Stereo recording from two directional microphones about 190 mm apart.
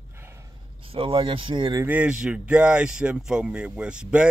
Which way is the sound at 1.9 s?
5° right (ahead or behind).